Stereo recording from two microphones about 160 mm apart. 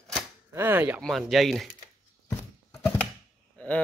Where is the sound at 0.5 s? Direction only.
15° right (ahead or behind).